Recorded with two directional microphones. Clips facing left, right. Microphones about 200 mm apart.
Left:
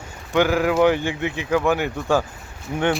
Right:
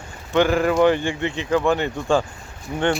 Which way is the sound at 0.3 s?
10° left (ahead or behind).